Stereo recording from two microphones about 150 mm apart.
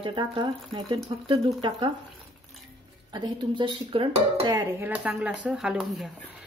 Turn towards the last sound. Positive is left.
turn(degrees=0)  # may be behind; listen again after turning